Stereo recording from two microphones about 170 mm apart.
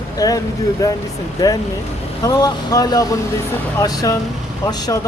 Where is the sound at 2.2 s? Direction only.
20° left (ahead or behind).